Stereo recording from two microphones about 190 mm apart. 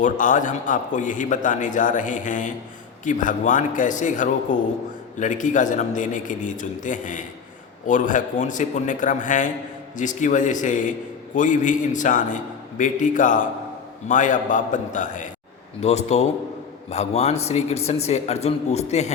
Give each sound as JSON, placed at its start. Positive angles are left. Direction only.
{"t": 0.0, "sound": "a man's voice", "side_deg": 40}